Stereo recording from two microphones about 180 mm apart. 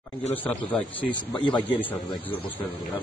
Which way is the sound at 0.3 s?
10° left (ahead or behind).